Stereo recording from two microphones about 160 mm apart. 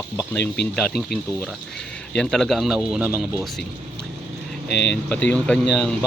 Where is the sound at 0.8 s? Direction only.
Centre (ahead or behind).